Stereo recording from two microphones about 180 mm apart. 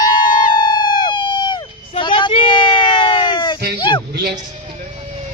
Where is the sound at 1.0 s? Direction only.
25° left (ahead or behind).